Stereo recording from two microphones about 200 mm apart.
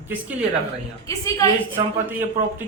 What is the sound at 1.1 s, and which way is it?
Speech, 15° left (ahead or behind).